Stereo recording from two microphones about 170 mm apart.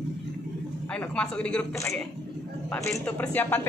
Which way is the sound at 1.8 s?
15° left (ahead or behind).